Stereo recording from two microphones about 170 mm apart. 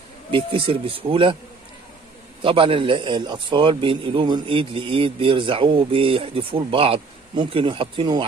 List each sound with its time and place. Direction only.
0.3 s a man's voice: 30° right (ahead or behind)
2.4 s a man's voice: 30° right (ahead or behind)